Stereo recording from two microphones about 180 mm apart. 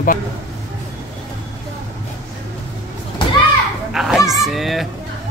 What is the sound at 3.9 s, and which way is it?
Dog, centre (ahead or behind).